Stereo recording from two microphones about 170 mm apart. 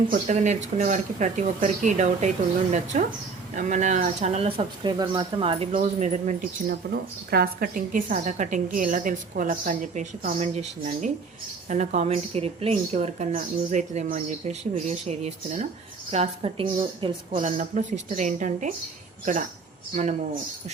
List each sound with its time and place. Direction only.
0.1 s a woman's voice: 50° right (ahead or behind)
6.7 s a woman's voice: 65° right (ahead or behind); by 17.4 s 30° right (ahead or behind)
17.4 s a woman's voice: 45° right (ahead or behind)